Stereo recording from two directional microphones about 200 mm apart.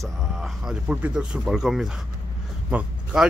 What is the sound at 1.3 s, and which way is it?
Speech, 5° right (ahead or behind).